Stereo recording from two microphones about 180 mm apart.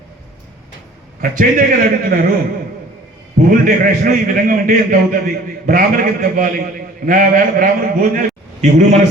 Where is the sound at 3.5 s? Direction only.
50° right (ahead or behind).